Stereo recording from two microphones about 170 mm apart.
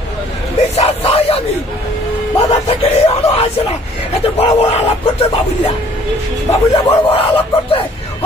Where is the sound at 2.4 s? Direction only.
35° left (ahead or behind).